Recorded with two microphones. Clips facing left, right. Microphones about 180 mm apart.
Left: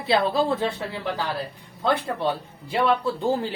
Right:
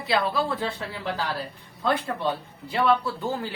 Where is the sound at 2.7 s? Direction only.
20° left (ahead or behind).